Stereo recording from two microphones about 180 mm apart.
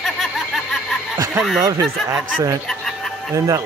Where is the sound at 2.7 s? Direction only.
Centre (ahead or behind).